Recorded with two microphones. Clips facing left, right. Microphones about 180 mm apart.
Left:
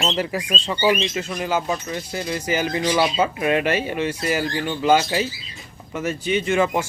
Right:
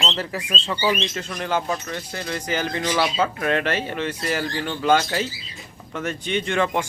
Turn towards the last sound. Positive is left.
turn(degrees=5)  # may be behind; listen again after turning